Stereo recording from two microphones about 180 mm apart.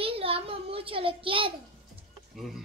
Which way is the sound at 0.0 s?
30° right (ahead or behind).